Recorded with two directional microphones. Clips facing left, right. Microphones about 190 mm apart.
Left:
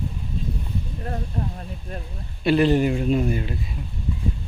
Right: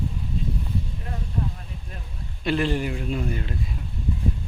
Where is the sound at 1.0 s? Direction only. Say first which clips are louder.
Left 2 dB; 45° left (ahead or behind).